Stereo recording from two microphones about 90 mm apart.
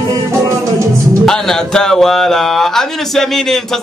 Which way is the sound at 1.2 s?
5° left (ahead or behind).